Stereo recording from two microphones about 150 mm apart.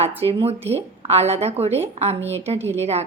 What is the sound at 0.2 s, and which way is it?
A woman's voice, 40° right (ahead or behind).